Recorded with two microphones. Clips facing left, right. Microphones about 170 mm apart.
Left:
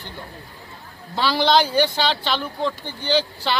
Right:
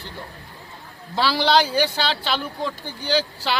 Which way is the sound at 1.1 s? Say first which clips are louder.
Left 1 dB; 5° right (ahead or behind).